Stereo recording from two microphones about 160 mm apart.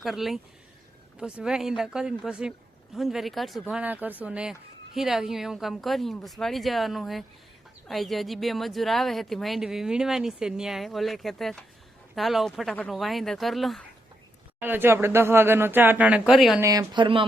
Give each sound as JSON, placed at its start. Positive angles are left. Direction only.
{"t": 0.0, "sound": "speech", "side_deg": 0}
{"t": 14.6, "sound": "speech", "side_deg": -15}
{"t": 16.6, "sound": "speech", "side_deg": -20}